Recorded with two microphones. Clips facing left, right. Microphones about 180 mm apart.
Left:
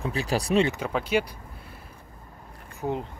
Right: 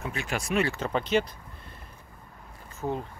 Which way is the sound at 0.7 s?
10° left (ahead or behind).